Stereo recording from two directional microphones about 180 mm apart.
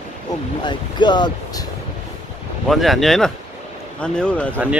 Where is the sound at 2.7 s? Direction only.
Centre (ahead or behind).